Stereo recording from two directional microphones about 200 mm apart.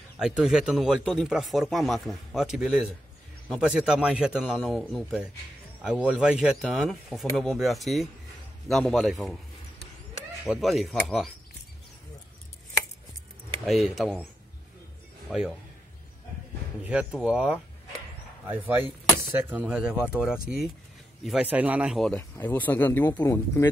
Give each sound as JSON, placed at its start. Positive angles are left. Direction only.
{"t": 0.2, "sound": "speech", "side_deg": -5}
{"t": 10.4, "sound": "speech", "side_deg": 0}
{"t": 13.7, "sound": "speech", "side_deg": 0}
{"t": 15.2, "sound": "speech", "side_deg": -5}
{"t": 16.8, "sound": "speech", "side_deg": -5}
{"t": 19.3, "sound": "speech", "side_deg": -10}